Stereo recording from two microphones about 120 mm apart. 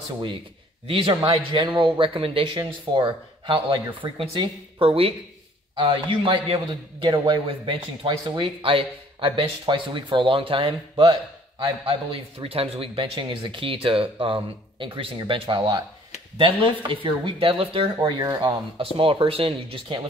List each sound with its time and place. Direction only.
0.8 s a man's voice: 50° right (ahead or behind)
18.9 s a man's voice: 50° right (ahead or behind)